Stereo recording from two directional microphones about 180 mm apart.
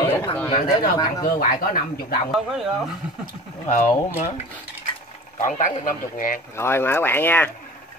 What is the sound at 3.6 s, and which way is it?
Speech, 40° left (ahead or behind).